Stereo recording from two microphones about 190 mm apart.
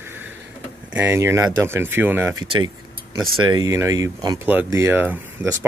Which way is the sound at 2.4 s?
25° right (ahead or behind).